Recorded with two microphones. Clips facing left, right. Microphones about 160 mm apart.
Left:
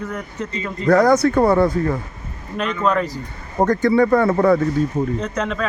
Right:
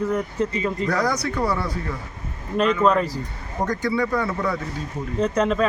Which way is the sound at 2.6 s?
5° right (ahead or behind).